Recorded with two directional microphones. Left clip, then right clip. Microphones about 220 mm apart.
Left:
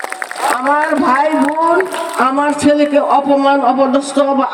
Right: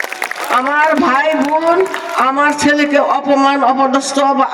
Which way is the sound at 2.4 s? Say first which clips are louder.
Even; 50° right (ahead or behind).